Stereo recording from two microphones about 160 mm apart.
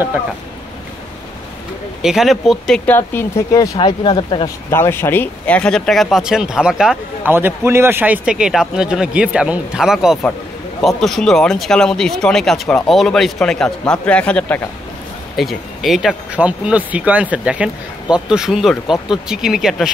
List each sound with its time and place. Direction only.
2.0 s speech: 5° right (ahead or behind)
3.0 s speech: 15° left (ahead or behind)
3.7 s speech: 30° left (ahead or behind)
4.6 s speech: 15° left (ahead or behind); by 19.9 s centre (ahead or behind)